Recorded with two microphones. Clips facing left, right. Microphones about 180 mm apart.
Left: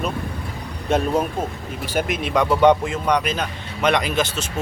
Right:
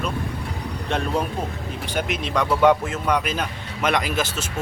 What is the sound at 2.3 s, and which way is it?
A man's voice, 5° right (ahead or behind).